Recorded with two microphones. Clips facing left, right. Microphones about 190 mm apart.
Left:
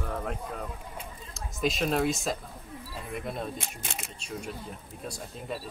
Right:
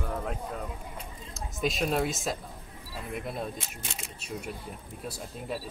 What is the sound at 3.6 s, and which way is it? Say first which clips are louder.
Speech: left 2 dB; 55° left (ahead or behind).